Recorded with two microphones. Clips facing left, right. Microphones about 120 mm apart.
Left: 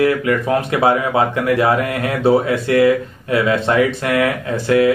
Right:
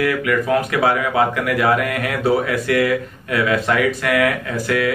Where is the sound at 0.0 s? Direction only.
30° left (ahead or behind).